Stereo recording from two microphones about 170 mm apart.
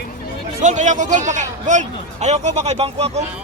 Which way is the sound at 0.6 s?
45° right (ahead or behind).